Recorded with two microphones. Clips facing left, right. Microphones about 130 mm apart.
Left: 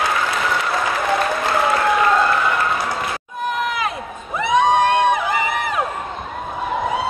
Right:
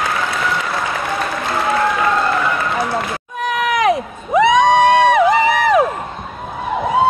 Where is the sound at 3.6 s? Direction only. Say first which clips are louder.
Right 8 dB; 80° right.